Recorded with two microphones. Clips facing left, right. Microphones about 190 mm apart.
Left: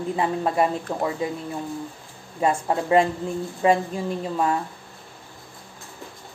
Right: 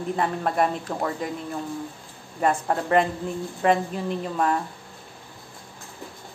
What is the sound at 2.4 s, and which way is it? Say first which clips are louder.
A woman's voice: left 1 dB; 10° left (ahead or behind).